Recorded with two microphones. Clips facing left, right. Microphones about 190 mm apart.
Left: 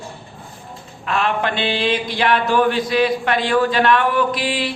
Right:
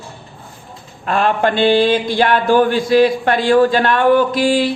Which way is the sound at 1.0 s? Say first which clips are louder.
Right 5 dB; 45° right (ahead or behind).